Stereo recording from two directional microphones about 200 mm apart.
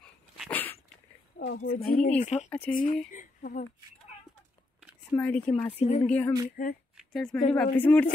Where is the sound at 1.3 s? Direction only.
55° left (ahead or behind).